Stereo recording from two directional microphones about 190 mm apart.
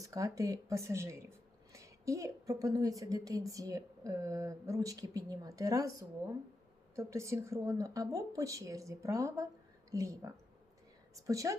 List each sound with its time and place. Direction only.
0.0 s a woman's voice: 15° right (ahead or behind)